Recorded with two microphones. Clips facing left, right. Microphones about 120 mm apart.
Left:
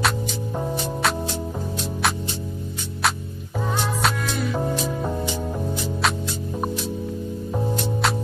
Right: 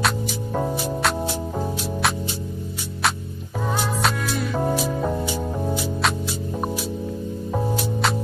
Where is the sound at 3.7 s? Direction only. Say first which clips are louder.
Even; centre (ahead or behind).